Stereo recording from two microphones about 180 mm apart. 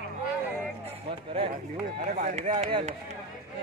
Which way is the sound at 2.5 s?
30° right (ahead or behind).